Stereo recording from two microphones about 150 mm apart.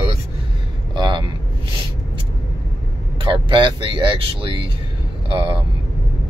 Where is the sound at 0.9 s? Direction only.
30° right (ahead or behind).